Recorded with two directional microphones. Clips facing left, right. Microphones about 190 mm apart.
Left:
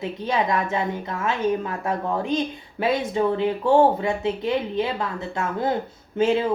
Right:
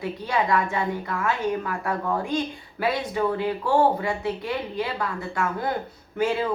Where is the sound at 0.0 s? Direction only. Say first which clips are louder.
Left 2 dB; 20° left (ahead or behind).